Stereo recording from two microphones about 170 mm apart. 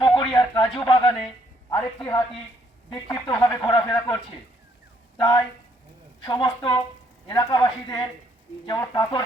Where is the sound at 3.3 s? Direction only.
15° left (ahead or behind).